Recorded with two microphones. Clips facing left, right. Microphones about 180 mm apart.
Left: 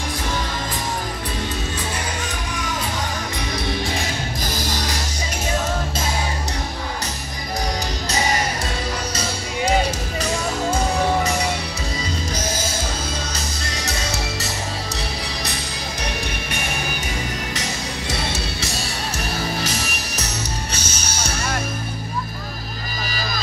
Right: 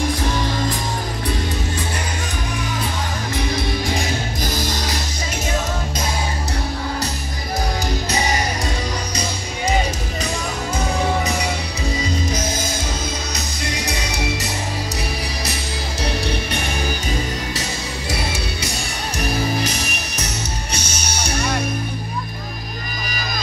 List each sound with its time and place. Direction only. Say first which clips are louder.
20.2 s music: even; 10° right (ahead or behind)